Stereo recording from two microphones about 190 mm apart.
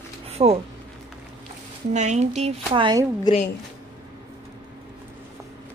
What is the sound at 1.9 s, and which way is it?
Speech, 35° right (ahead or behind).